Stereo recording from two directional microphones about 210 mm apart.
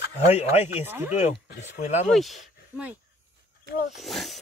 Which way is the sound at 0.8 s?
10° right (ahead or behind).